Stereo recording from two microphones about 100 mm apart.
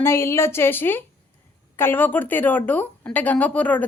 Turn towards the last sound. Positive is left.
turn(degrees=15)  # may be behind; listen again after turning